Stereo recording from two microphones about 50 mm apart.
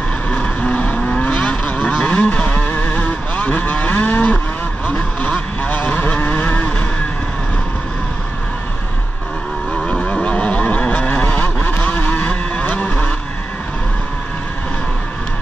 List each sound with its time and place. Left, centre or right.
0.3 s vehicle: left
9.8 s vehicle: centre; by 12.1 s left
12.1 s vehicle: left